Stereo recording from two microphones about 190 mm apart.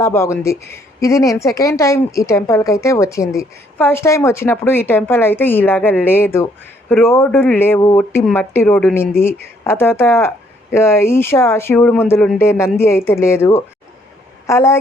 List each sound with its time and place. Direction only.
0.0 s a woman's voice: 15° left (ahead or behind)